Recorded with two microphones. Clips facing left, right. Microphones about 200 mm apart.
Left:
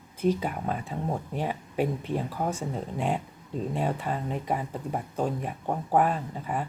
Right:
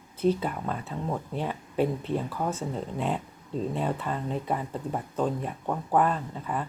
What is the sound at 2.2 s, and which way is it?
Speech, 40° left (ahead or behind).